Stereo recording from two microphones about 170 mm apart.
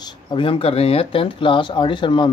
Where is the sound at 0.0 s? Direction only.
30° left (ahead or behind).